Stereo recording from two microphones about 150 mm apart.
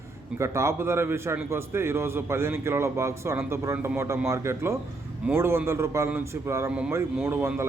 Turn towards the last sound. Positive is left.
turn(degrees=-15)  # may be behind; listen again after turning